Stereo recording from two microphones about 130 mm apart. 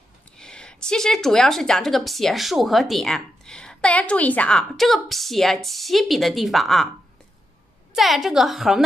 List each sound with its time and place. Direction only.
0.4 s a woman's voice: 5° left (ahead or behind)
7.9 s a woman's voice: centre (ahead or behind)